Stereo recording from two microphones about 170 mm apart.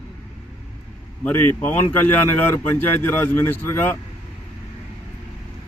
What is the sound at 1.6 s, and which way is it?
A man's voice, 10° left (ahead or behind).